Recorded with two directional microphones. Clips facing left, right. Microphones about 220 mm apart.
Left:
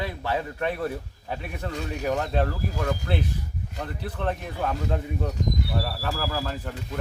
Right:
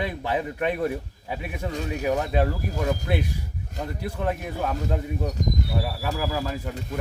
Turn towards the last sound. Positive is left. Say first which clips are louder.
# right 2 dB
turn(degrees=-10)  # may be behind; listen again after turning